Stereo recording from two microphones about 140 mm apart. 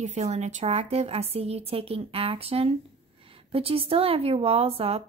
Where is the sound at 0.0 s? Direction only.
55° right (ahead or behind).